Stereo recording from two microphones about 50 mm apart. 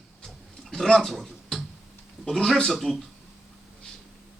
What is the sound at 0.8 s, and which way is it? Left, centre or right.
Speech, centre.